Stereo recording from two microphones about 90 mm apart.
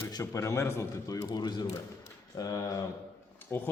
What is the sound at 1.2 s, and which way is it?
Speech, 50° left (ahead or behind).